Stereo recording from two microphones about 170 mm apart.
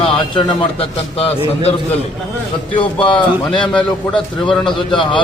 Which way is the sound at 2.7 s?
30° left (ahead or behind).